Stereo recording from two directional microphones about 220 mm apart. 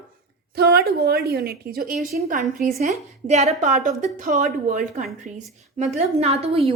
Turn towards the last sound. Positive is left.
turn(degrees=-25)  # may be behind; listen again after turning